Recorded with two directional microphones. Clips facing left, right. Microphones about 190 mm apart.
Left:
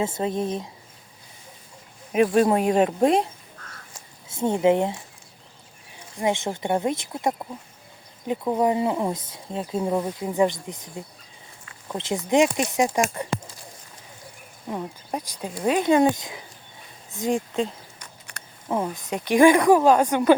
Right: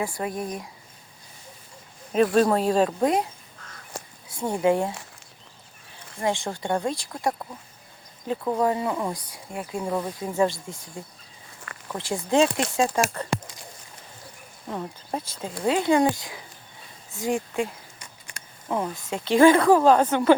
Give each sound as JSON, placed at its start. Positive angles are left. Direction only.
{"t": 0.0, "sound": "speech", "side_deg": 25}
{"t": 2.1, "sound": "speech", "side_deg": 15}
{"t": 3.9, "sound": "a sound", "side_deg": -65}
{"t": 4.3, "sound": "speech", "side_deg": 20}
{"t": 6.1, "sound": "speech", "side_deg": 20}
{"t": 14.7, "sound": "speech", "side_deg": 15}
{"t": 17.6, "sound": "a sound", "side_deg": -10}
{"t": 18.7, "sound": "speech", "side_deg": 15}